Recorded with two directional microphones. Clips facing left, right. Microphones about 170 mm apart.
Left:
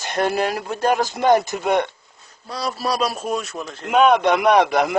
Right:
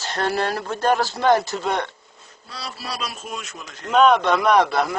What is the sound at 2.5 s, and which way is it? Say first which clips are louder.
A man's voice: left 9 dB; 40° left (ahead or behind).